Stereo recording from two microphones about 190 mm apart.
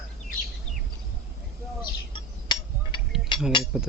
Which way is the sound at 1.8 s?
25° left (ahead or behind).